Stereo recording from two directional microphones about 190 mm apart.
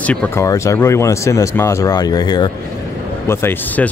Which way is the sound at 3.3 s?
10° left (ahead or behind).